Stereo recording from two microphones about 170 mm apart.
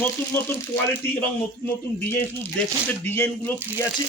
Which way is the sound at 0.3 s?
15° left (ahead or behind).